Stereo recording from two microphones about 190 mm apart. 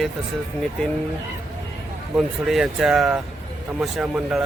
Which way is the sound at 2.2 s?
Centre (ahead or behind).